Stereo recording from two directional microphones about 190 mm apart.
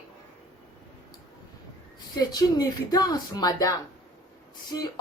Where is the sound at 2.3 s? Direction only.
20° left (ahead or behind).